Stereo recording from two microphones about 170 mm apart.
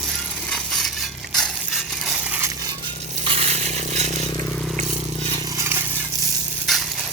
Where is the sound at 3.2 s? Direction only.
35° right (ahead or behind).